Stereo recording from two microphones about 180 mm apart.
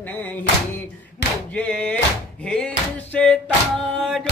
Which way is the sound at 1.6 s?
5° left (ahead or behind).